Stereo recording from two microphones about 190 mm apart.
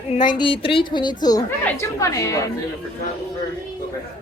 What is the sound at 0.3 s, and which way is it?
A woman's voice, 25° left (ahead or behind).